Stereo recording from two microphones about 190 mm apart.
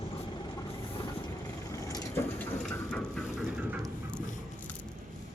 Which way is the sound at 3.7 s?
Centre (ahead or behind).